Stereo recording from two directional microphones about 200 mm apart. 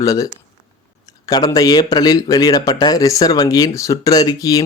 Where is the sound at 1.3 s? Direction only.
20° left (ahead or behind).